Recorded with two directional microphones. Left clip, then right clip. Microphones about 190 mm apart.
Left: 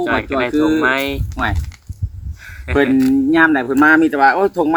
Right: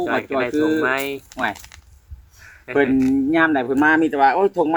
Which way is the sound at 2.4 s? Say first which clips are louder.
Left 6 dB; 45° left (ahead or behind).